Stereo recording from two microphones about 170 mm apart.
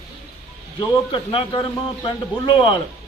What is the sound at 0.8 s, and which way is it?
A man's voice, 30° left (ahead or behind).